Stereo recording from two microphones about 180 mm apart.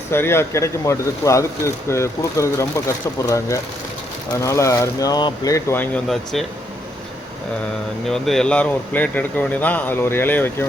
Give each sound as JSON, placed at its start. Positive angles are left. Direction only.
{"t": 0.1, "sound": "speech", "side_deg": 15}
{"t": 8.0, "sound": "speech", "side_deg": 0}